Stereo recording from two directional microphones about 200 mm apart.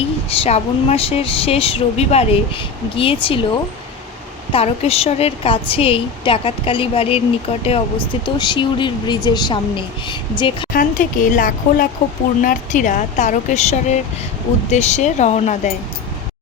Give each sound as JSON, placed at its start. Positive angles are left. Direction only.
{"t": 0.3, "sound": "speech", "side_deg": 30}
{"t": 4.5, "sound": "speech", "side_deg": 30}
{"t": 10.8, "sound": "speech", "side_deg": 40}